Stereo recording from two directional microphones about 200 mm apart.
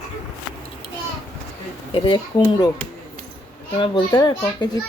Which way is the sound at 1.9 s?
25° left (ahead or behind).